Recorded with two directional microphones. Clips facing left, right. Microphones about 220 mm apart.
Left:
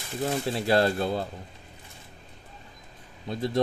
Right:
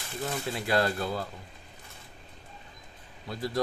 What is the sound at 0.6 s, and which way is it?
Speech, 30° left (ahead or behind).